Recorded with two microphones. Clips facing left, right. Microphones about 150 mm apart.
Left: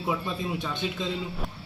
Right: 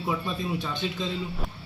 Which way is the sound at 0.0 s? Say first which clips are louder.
Even; 5° left (ahead or behind).